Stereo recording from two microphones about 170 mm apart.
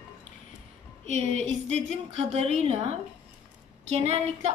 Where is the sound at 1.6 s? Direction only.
40° right (ahead or behind).